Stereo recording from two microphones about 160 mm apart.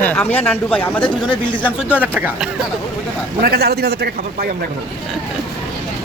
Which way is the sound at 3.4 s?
75° right (ahead or behind).